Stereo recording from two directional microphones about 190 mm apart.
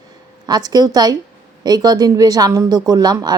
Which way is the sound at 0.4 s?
20° right (ahead or behind).